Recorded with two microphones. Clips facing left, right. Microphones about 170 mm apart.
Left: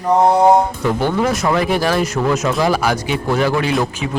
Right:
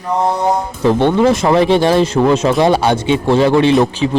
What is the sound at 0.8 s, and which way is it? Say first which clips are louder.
Speech: right 6 dB; 30° right (ahead or behind).